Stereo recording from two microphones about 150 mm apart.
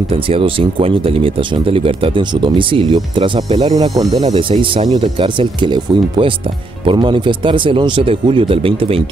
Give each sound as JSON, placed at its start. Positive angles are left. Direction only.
{"t": 0.1, "sound": "speech", "side_deg": -40}
{"t": 3.7, "sound": "speech", "side_deg": -25}